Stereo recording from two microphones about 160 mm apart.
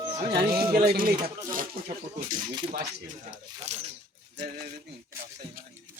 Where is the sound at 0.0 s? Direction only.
30° right (ahead or behind).